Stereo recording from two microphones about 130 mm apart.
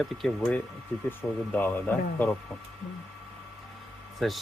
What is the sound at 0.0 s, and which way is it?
Speech, centre (ahead or behind).